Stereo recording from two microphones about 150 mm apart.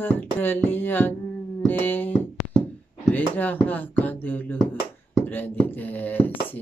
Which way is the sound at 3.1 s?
10° left (ahead or behind).